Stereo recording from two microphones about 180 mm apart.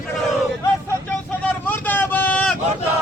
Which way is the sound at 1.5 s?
10° left (ahead or behind).